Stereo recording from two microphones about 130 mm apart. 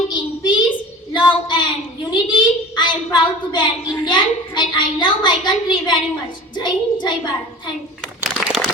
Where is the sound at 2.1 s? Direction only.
35° left (ahead or behind).